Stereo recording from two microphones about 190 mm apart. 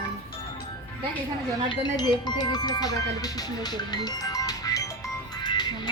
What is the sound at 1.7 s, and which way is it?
Speech, 20° left (ahead or behind).